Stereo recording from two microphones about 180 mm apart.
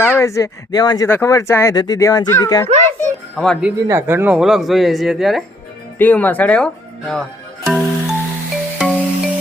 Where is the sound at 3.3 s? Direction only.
5° left (ahead or behind).